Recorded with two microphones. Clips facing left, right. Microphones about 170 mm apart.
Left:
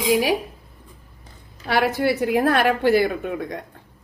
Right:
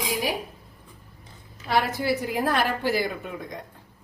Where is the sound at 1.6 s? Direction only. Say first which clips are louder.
Left 4 dB; 70° left (ahead or behind).